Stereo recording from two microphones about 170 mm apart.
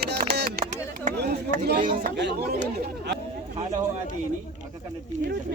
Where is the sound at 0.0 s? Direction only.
70° right (ahead or behind).